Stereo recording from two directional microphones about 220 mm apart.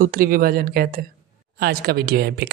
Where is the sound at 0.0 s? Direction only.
40° right (ahead or behind).